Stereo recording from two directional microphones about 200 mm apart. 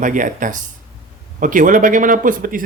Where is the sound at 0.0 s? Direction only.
40° right (ahead or behind).